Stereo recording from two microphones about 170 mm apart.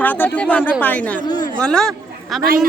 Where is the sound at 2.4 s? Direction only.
55° right (ahead or behind).